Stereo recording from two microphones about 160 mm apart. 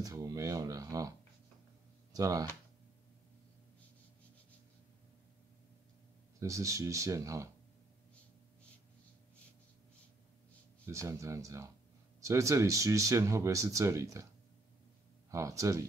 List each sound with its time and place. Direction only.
0.0 s a sound: 20° right (ahead or behind)
2.1 s speech: 20° right (ahead or behind)
6.4 s speech: 20° right (ahead or behind)
10.9 s speech: 20° right (ahead or behind)
15.3 s speech: 20° right (ahead or behind)